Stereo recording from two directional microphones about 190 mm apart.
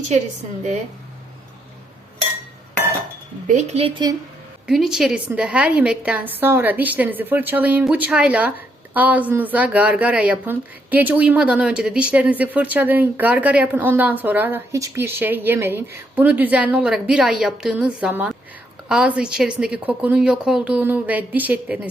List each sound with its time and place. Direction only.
3.4 s speech: 40° right (ahead or behind)
4.6 s a woman's voice: centre (ahead or behind)